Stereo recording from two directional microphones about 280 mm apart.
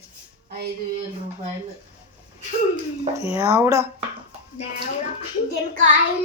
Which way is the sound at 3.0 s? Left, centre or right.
Centre.